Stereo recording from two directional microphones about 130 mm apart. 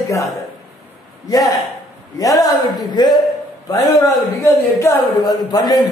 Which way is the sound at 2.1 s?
25° left (ahead or behind).